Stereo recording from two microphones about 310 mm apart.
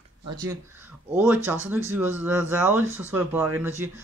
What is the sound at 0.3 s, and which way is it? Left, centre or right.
Speech, centre.